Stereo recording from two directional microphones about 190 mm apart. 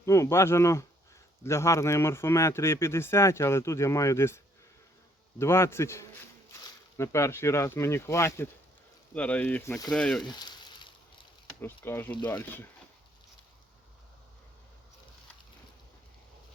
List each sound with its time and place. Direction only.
0.0 s a man's voice: 15° left (ahead or behind)
5.4 s a man's voice: 15° left (ahead or behind)
10.2 s frying: 20° left (ahead or behind)
11.4 s a man's voice: 10° left (ahead or behind)